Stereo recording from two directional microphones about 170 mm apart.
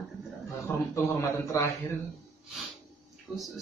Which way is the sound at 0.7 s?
15° left (ahead or behind).